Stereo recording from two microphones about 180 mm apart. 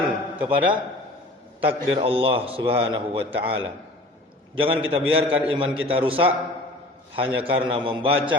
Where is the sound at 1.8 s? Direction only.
35° right (ahead or behind).